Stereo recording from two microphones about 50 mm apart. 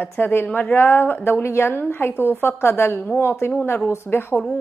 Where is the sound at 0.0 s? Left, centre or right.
Left.